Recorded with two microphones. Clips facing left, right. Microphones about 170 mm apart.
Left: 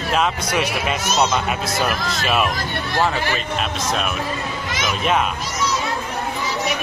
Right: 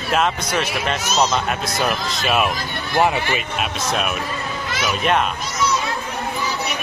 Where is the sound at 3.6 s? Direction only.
5° right (ahead or behind).